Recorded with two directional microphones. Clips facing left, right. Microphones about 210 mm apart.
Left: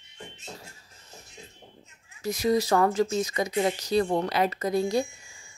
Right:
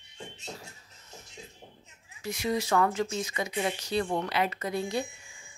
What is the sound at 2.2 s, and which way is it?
Speech, 40° left (ahead or behind).